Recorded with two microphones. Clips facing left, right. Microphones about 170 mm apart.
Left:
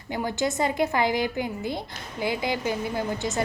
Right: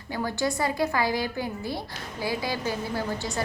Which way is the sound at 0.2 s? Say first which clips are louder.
Left 1 dB; 20° left (ahead or behind).